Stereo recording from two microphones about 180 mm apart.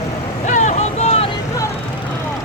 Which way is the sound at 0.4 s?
40° left (ahead or behind).